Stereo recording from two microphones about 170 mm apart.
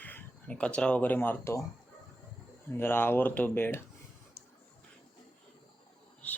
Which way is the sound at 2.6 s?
15° left (ahead or behind).